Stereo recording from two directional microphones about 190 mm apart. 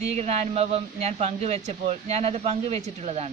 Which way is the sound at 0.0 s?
35° right (ahead or behind).